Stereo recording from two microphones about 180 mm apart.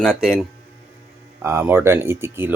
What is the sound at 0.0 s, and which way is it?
Speech, centre (ahead or behind).